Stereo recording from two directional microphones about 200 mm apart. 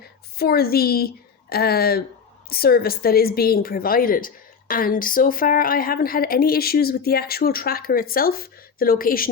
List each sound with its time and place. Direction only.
0.3 s a woman's voice: 50° left (ahead or behind)